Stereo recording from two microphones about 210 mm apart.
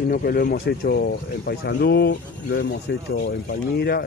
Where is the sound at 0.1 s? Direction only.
45° left (ahead or behind).